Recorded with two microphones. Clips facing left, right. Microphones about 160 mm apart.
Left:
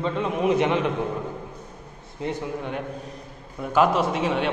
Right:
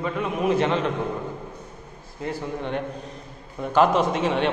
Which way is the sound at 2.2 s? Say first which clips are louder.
Left 1 dB; 20° left (ahead or behind).